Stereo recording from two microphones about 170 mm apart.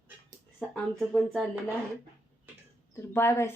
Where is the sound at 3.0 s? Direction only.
15° left (ahead or behind).